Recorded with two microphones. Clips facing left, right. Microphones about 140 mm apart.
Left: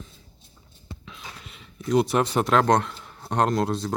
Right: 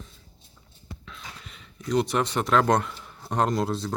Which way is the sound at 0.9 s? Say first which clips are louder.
Left 1 dB; 20° left (ahead or behind).